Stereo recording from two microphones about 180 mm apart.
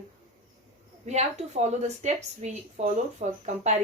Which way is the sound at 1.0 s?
40° right (ahead or behind).